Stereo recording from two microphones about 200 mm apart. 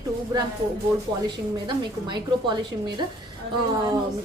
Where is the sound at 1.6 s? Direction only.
20° right (ahead or behind).